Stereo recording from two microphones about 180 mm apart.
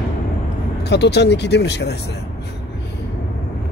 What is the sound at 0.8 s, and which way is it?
Speech, 70° left (ahead or behind).